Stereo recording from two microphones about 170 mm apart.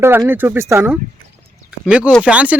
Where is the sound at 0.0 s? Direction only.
15° right (ahead or behind).